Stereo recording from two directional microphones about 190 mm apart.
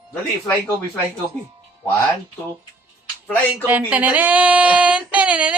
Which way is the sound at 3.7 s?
10° right (ahead or behind).